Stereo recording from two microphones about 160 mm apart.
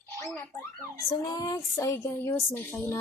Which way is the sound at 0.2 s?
15° left (ahead or behind).